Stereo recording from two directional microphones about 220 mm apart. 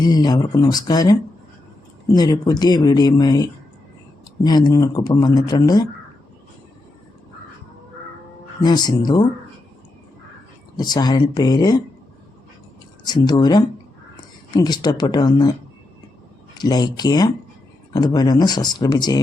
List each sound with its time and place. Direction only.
0.0 s speech: 20° left (ahead or behind)
2.1 s speech: 15° left (ahead or behind)
8.6 s speech: 20° left (ahead or behind)
10.8 s speech: 20° left (ahead or behind)
13.1 s speech: 20° left (ahead or behind)
16.6 s speech: 20° left (ahead or behind)